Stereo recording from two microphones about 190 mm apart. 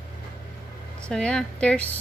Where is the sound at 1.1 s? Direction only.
5° left (ahead or behind).